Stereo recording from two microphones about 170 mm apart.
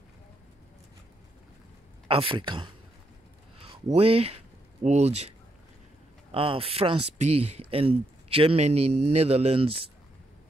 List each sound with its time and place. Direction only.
2.0 s speech: 30° right (ahead or behind)
3.9 s speech: 35° right (ahead or behind)
6.3 s speech: 30° right (ahead or behind)